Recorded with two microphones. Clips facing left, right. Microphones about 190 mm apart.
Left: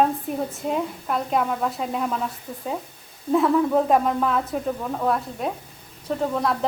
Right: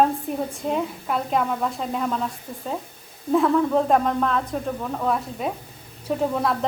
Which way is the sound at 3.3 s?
5° left (ahead or behind).